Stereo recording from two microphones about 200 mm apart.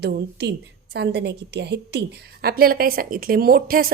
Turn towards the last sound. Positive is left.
turn(degrees=-50)  # may be behind; listen again after turning